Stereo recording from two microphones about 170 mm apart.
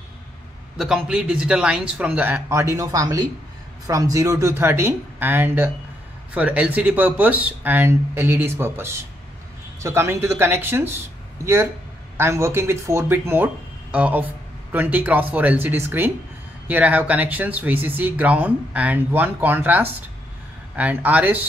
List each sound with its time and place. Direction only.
0.7 s speech: 5° right (ahead or behind)